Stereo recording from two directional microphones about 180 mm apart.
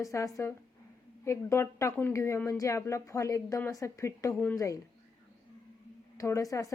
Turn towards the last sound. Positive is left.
turn(degrees=15)  # may be behind; listen again after turning